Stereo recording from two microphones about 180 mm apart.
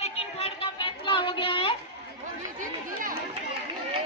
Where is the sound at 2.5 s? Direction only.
50° right (ahead or behind).